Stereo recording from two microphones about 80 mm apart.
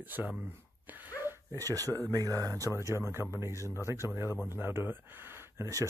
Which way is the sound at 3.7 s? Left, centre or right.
Left.